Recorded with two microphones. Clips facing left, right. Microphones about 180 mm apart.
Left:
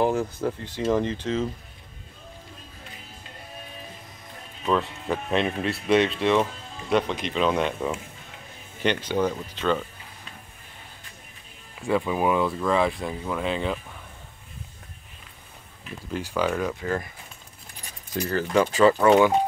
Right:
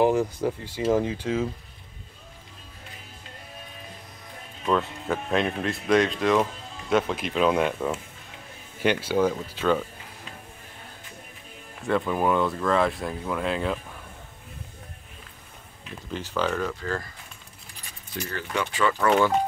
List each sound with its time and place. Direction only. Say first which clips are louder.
0.0 s speech: right 2 dB; 10° right (ahead or behind)
4.6 s speech: even; centre (ahead or behind)
11.9 s speech: even; 5° left (ahead or behind)
15.8 s speech: left 2 dB; 10° left (ahead or behind)
18.1 s speech: left 8 dB; 40° left (ahead or behind)
18.9 s speech: left 4 dB; 20° left (ahead or behind)